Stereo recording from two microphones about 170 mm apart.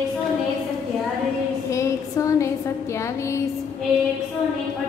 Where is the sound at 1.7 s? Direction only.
15° left (ahead or behind).